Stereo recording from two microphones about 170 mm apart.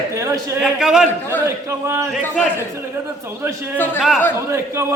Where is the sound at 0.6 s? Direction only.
5° right (ahead or behind).